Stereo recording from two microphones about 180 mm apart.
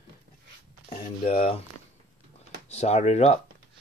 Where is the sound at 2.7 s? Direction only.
35° left (ahead or behind).